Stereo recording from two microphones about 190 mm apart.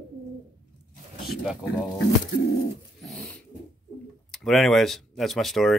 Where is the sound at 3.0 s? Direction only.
5° left (ahead or behind).